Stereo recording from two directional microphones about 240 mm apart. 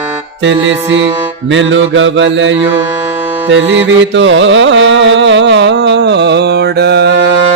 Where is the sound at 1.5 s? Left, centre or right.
Right.